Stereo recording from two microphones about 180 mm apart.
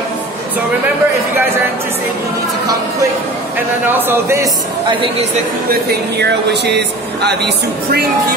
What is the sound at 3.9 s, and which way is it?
Speech, 15° right (ahead or behind).